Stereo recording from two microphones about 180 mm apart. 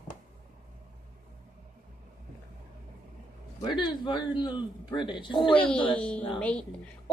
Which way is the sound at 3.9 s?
25° left (ahead or behind).